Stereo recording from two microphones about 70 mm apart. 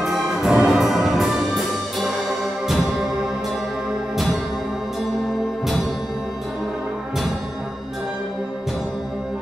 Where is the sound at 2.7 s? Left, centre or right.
Centre.